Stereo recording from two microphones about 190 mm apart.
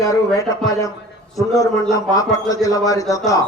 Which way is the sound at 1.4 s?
15° left (ahead or behind).